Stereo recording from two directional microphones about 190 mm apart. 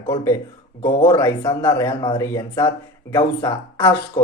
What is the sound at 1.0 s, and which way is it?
Speech, 15° left (ahead or behind).